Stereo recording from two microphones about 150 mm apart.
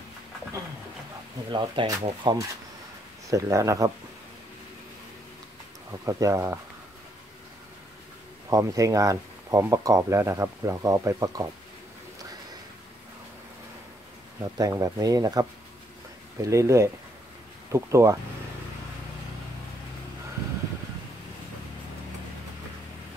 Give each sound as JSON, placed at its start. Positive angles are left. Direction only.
{"t": 1.5, "sound": "speech", "side_deg": -30}
{"t": 5.9, "sound": "speech", "side_deg": -20}
{"t": 8.5, "sound": "speech", "side_deg": -20}
{"t": 14.4, "sound": "speech", "side_deg": -25}